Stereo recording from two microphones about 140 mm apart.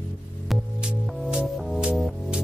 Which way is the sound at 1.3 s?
5° right (ahead or behind).